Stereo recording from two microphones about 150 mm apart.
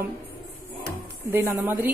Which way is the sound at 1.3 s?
20° right (ahead or behind).